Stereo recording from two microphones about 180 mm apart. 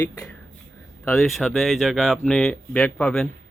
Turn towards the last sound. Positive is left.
turn(degrees=5)  # may be behind; listen again after turning